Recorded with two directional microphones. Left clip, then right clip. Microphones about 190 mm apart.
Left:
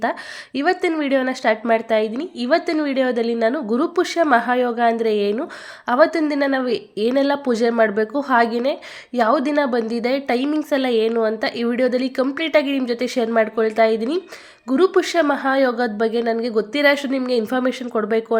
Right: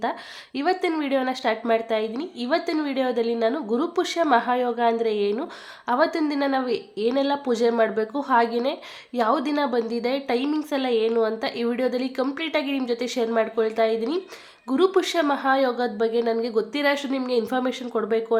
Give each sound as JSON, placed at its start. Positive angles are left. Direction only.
{"t": 0.0, "sound": "a woman's voice", "side_deg": 20}